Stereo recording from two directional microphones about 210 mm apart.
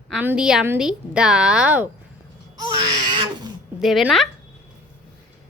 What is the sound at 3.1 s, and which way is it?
Wild animals, 20° right (ahead or behind).